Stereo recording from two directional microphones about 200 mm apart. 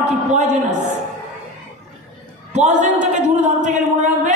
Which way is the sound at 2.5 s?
35° right (ahead or behind).